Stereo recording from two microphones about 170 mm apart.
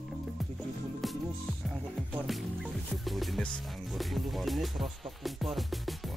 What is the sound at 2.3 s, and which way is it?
Music, centre (ahead or behind).